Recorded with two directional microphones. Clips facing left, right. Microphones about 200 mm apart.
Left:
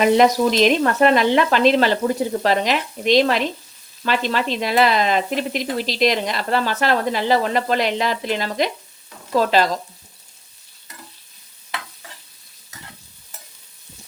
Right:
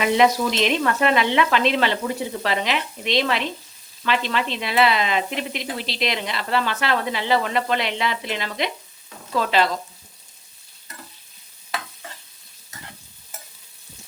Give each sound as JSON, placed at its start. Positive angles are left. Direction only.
{"t": 0.0, "sound": "speech", "side_deg": 40}